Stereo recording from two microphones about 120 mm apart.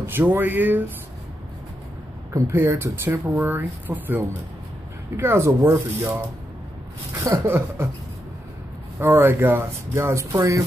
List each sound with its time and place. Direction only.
0.0 s speech: 15° right (ahead or behind)
2.3 s speech: 25° right (ahead or behind)
7.2 s speech: 20° right (ahead or behind)
9.0 s speech: 20° right (ahead or behind)